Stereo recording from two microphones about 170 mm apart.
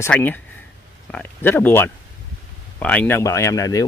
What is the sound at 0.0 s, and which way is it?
Speech, 10° left (ahead or behind).